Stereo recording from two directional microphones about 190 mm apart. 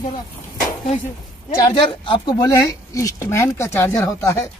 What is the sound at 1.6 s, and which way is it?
Speech, 25° left (ahead or behind).